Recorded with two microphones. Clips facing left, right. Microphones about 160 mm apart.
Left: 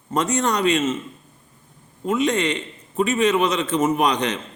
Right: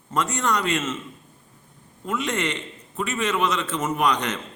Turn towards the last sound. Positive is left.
turn(degrees=15)  # may be behind; listen again after turning